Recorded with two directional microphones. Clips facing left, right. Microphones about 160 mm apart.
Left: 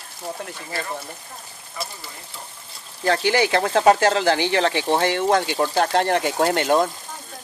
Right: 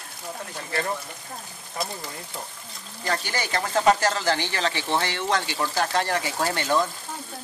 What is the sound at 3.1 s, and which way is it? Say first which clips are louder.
Speech: left 9 dB; 65° left (ahead or behind).